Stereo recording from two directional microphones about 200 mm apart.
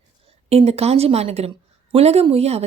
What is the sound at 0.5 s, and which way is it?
A woman's voice, 30° right (ahead or behind).